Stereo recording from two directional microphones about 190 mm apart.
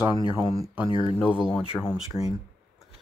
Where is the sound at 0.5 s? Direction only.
15° right (ahead or behind).